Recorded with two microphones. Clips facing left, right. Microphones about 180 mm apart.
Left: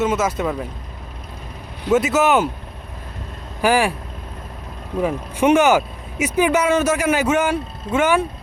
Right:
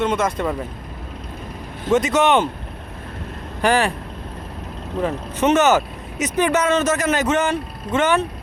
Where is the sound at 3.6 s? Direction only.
10° left (ahead or behind).